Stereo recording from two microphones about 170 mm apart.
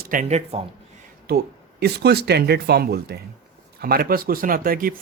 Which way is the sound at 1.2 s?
70° right (ahead or behind).